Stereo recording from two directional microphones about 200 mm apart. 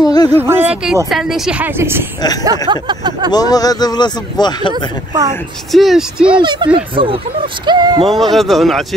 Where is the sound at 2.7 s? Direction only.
25° right (ahead or behind).